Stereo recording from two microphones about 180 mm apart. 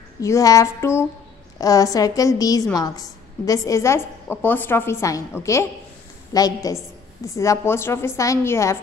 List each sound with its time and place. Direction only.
0.2 s a woman's voice: 20° left (ahead or behind)